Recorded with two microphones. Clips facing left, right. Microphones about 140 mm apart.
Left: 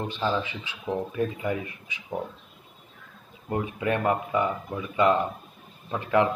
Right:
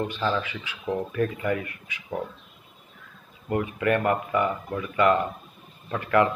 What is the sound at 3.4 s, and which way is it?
Speech, 15° left (ahead or behind).